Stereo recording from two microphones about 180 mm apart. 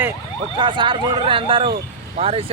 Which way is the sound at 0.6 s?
25° right (ahead or behind).